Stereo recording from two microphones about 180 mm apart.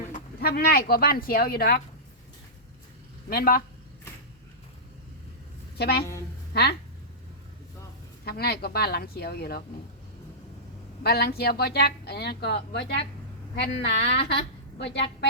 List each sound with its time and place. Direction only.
0.1 s a woman's voice: 60° left (ahead or behind)
3.2 s a woman's voice: 55° left (ahead or behind)
5.7 s a woman's voice: 60° left (ahead or behind)
8.2 s a woman's voice: 60° left (ahead or behind)
11.0 s a woman's voice: 60° left (ahead or behind)
14.0 s a woman's voice: 30° left (ahead or behind)
14.8 s a woman's voice: 70° left (ahead or behind)